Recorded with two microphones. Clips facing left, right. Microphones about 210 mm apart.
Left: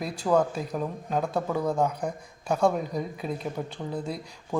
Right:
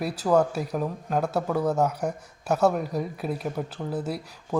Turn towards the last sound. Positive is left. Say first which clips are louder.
# right 2 dB
turn(degrees=-5)  # may be behind; listen again after turning